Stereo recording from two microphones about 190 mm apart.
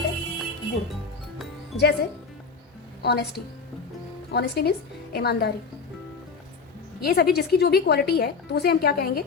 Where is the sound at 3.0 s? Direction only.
60° left (ahead or behind).